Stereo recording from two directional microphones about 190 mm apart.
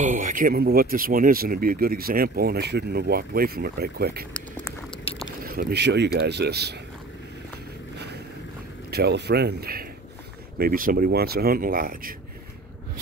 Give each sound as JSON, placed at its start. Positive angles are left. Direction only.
{"t": 0.0, "sound": "speech", "side_deg": -45}
{"t": 8.9, "sound": "speech", "side_deg": -60}